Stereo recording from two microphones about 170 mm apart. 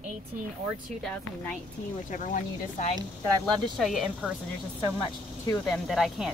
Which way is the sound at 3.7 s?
Centre (ahead or behind).